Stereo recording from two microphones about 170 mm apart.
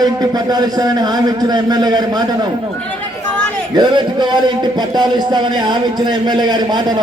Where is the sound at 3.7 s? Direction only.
25° right (ahead or behind).